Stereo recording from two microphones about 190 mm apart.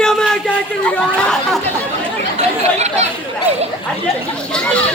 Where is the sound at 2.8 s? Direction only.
35° right (ahead or behind).